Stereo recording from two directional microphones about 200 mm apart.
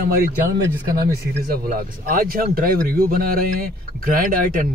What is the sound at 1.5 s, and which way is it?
Speech, 45° right (ahead or behind).